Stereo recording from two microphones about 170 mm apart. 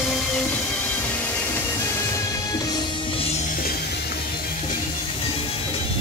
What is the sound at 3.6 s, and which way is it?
Music, 65° left (ahead or behind).